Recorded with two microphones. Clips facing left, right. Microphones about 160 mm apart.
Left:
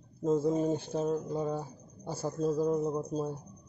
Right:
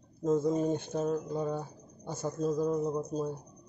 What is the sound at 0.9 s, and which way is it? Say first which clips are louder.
Speech: even; 10° left (ahead or behind).